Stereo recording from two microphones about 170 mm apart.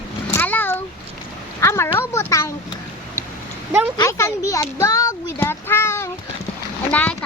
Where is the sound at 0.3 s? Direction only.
10° left (ahead or behind).